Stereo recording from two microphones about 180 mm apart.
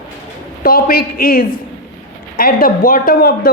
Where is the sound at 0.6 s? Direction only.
55° left (ahead or behind).